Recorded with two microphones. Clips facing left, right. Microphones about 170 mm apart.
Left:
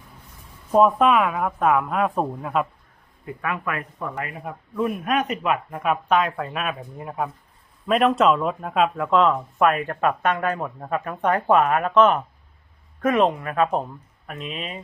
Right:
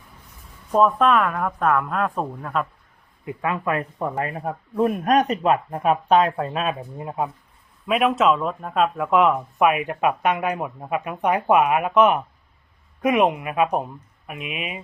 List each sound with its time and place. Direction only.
0.7 s speech: 5° left (ahead or behind)
3.2 s speech: 25° right (ahead or behind)
7.9 s speech: 5° right (ahead or behind)
9.0 s speech: 10° right (ahead or behind)